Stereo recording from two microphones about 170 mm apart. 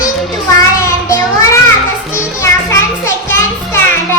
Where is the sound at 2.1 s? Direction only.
15° left (ahead or behind).